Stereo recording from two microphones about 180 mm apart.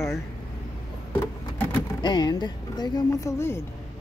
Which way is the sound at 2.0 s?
25° left (ahead or behind).